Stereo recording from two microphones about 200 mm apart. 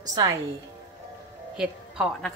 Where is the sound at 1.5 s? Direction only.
5° right (ahead or behind).